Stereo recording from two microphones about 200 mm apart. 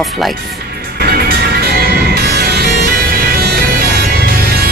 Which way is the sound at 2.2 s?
55° right (ahead or behind).